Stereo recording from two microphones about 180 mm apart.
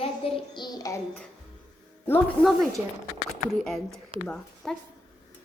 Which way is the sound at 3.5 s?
Centre (ahead or behind).